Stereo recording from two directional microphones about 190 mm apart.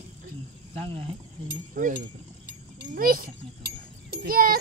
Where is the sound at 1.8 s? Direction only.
45° right (ahead or behind).